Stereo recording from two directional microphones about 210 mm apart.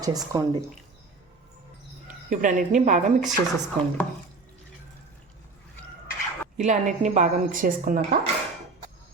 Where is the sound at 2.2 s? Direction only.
40° right (ahead or behind).